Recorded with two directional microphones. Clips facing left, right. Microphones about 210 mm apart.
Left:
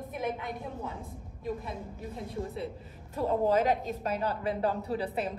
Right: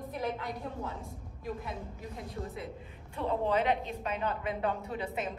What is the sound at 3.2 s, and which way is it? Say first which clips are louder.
A woman's voice: left 4 dB; 45° left (ahead or behind).